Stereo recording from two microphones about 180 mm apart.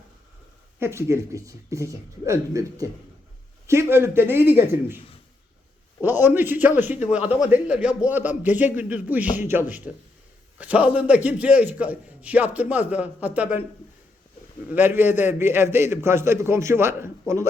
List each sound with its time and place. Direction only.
0.8 s a man's voice: 15° right (ahead or behind)
6.0 s a man's voice: 10° right (ahead or behind)
14.7 s a man's voice: 10° right (ahead or behind)